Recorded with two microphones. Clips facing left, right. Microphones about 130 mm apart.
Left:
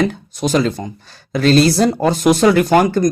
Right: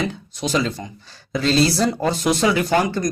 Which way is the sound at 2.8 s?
40° left (ahead or behind).